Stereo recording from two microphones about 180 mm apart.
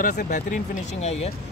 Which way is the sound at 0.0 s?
45° left (ahead or behind).